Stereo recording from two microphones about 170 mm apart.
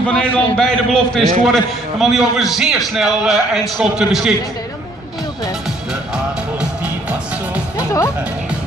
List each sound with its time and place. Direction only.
0.6 s a man's voice: 5° left (ahead or behind)
6.1 s music: 5° right (ahead or behind)
7.7 s music: 20° left (ahead or behind)